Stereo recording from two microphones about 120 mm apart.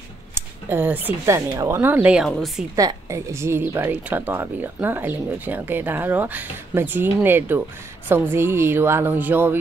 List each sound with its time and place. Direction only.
0.3 s a woman's voice: 20° right (ahead or behind); by 2.6 s centre (ahead or behind)
2.7 s speech: 30° right (ahead or behind)